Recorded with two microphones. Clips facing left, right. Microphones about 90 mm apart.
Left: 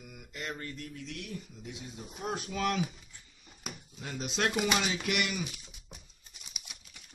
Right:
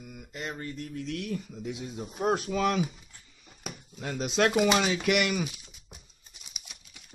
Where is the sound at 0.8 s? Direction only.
45° right (ahead or behind).